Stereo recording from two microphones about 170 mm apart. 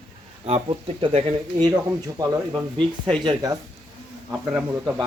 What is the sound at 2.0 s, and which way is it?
Speech, 20° right (ahead or behind).